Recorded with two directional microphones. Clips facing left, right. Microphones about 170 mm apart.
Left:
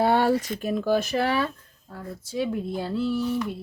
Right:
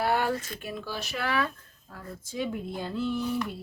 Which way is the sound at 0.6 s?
45° left (ahead or behind).